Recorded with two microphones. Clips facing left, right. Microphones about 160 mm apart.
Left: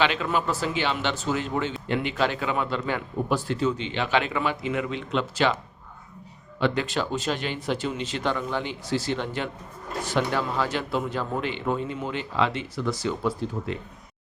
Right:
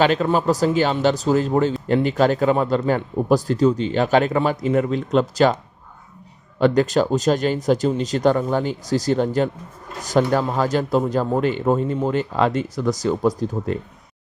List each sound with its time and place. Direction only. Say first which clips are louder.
0.0 s a man's voice: right 7 dB; 40° right (ahead or behind)
6.6 s a man's voice: right 9 dB; 40° right (ahead or behind)